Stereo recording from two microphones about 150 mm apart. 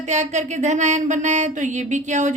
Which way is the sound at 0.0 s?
50° right (ahead or behind).